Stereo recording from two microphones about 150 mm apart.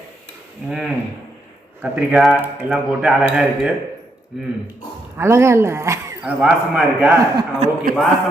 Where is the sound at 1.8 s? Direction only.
10° right (ahead or behind).